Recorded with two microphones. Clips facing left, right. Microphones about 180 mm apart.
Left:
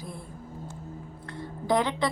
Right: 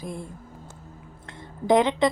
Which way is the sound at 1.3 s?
20° right (ahead or behind).